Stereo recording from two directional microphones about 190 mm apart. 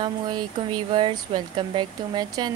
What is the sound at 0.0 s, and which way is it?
Speech, 25° right (ahead or behind).